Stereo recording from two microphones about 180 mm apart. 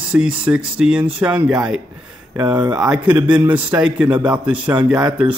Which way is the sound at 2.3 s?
20° right (ahead or behind).